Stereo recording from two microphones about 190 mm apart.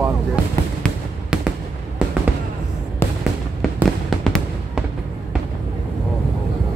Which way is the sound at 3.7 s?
Centre (ahead or behind).